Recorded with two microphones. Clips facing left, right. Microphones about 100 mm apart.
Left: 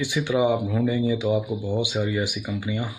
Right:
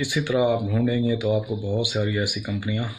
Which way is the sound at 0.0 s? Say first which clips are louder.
Even; 20° left (ahead or behind).